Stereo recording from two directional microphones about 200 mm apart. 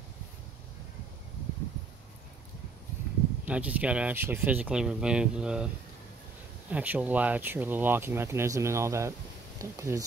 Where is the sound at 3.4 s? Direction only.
5° right (ahead or behind).